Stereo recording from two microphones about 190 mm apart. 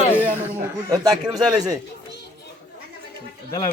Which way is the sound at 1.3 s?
20° right (ahead or behind).